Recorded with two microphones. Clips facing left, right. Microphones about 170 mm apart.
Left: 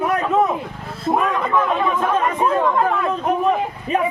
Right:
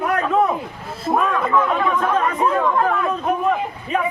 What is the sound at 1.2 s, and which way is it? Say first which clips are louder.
Speech: even; 15° left (ahead or behind).